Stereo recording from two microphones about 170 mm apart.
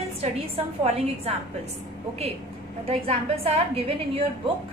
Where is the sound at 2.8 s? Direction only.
35° right (ahead or behind).